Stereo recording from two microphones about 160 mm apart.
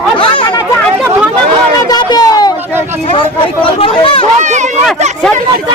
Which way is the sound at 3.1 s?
35° left (ahead or behind).